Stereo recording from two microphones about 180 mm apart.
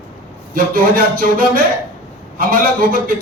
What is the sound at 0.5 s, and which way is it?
A man's voice, 50° right (ahead or behind).